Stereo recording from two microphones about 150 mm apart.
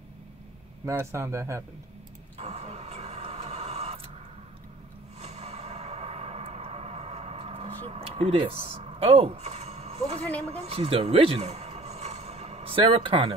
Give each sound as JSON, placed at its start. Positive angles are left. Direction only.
{"t": 0.8, "sound": "speech", "side_deg": -15}
{"t": 2.3, "sound": "vehicle", "side_deg": -45}
{"t": 5.2, "sound": "music", "side_deg": -45}